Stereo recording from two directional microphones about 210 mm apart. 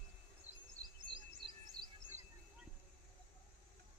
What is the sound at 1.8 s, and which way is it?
Chirp, 5° left (ahead or behind).